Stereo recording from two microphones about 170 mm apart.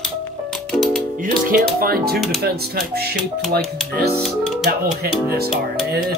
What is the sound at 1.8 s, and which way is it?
Speech, 60° right (ahead or behind).